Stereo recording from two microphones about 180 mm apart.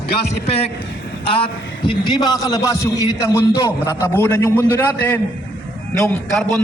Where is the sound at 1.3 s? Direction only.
30° left (ahead or behind); by 6.5 s 5° left (ahead or behind).